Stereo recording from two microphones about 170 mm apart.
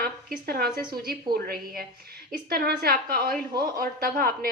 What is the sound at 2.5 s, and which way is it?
Speech, 65° right (ahead or behind).